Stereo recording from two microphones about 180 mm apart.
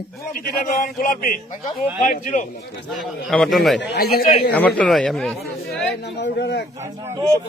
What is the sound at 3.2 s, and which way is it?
Speech, centre (ahead or behind).